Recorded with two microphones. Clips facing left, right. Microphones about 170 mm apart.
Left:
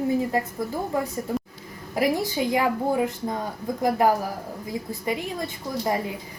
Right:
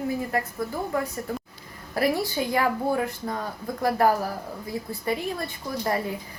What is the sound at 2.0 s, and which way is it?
Speech, 15° left (ahead or behind).